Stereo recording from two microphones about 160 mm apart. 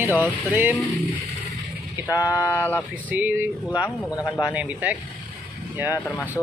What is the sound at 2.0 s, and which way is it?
Speech, 20° left (ahead or behind).